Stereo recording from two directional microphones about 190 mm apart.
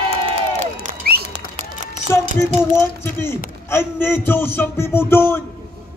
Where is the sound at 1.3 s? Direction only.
35° right (ahead or behind).